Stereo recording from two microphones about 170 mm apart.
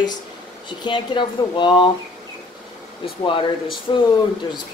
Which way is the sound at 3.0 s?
30° left (ahead or behind).